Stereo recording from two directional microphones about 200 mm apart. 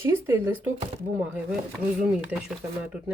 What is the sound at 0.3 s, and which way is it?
A woman's voice, 10° right (ahead or behind).